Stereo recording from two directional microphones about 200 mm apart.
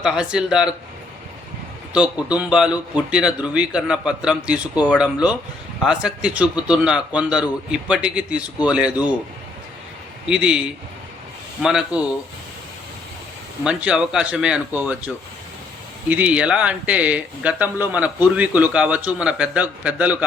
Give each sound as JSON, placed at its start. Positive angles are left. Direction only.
{"t": 0.0, "sound": "a man's voice", "side_deg": -5}
{"t": 1.9, "sound": "a man's voice", "side_deg": -5}
{"t": 10.2, "sound": "a man's voice", "side_deg": -5}
{"t": 11.6, "sound": "a man's voice", "side_deg": -5}
{"t": 13.7, "sound": "a man's voice", "side_deg": -5}